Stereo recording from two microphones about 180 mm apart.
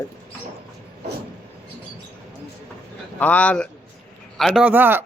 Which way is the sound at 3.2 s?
10° left (ahead or behind).